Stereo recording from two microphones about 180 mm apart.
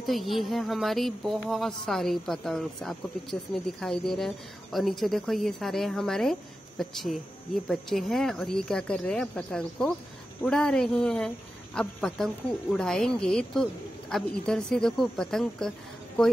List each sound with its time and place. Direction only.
0.0 s speech: centre (ahead or behind)